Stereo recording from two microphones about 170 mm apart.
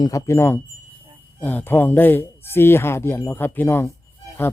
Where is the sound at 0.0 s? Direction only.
15° left (ahead or behind).